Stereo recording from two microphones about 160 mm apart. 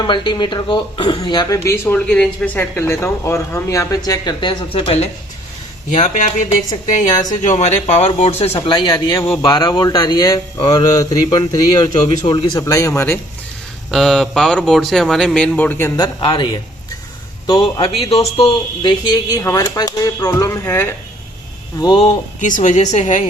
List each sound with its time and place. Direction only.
0.0 s speech: 30° left (ahead or behind)
6.0 s speech: 50° left (ahead or behind); by 13.1 s 15° left (ahead or behind)
13.9 s speech: centre (ahead or behind)
16.0 s a man's voice: 25° left (ahead or behind)
21.8 s speech: 30° left (ahead or behind)
22.4 s speech: 55° left (ahead or behind)